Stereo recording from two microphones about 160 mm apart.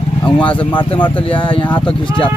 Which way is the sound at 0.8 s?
30° left (ahead or behind).